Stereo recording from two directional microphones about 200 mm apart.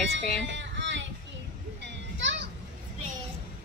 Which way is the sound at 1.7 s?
65° right (ahead or behind).